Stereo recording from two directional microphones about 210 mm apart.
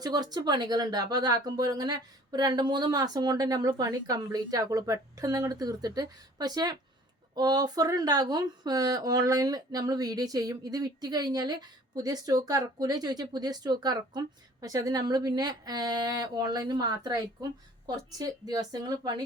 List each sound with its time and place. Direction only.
0.0 s speech: 20° right (ahead or behind)